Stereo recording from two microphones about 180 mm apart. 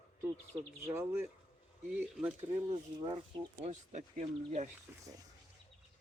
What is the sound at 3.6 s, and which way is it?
Speech, 40° right (ahead or behind).